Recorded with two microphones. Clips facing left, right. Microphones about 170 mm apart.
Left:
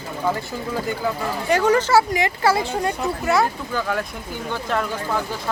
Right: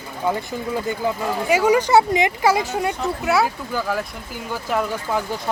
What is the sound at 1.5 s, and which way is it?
Speech, 10° right (ahead or behind).